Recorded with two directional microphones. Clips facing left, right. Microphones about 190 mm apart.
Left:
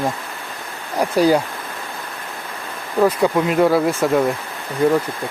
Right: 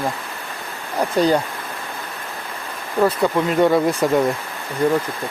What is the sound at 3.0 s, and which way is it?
Speech, 10° left (ahead or behind).